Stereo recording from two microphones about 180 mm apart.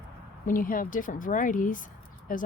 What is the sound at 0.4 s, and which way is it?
Speech, 50° left (ahead or behind).